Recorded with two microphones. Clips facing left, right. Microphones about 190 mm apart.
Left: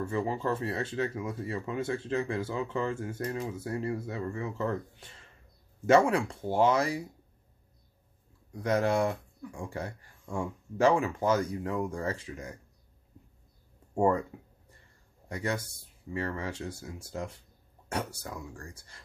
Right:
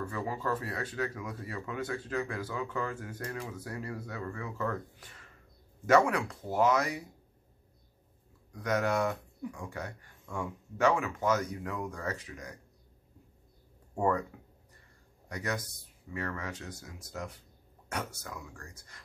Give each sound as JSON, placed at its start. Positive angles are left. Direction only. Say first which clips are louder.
{"t": 0.0, "sound": "speech", "louder": "left 4 dB", "side_deg": 25}
{"t": 8.6, "sound": "speech", "louder": "left 3 dB", "side_deg": 30}
{"t": 13.9, "sound": "speech", "louder": "left 4 dB", "side_deg": 25}
{"t": 15.2, "sound": "speech", "louder": "left 3 dB", "side_deg": 30}